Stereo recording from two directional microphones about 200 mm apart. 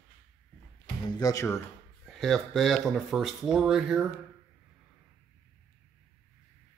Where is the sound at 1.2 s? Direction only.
15° left (ahead or behind).